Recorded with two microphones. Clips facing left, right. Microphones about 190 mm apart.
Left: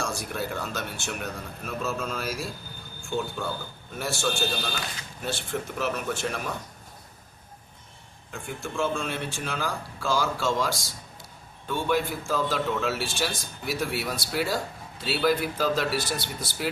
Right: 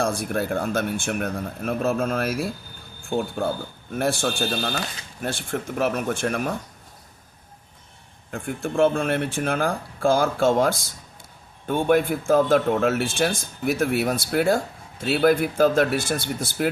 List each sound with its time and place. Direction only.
0.0 s a man's voice: 55° right (ahead or behind)
8.3 s a man's voice: 55° right (ahead or behind)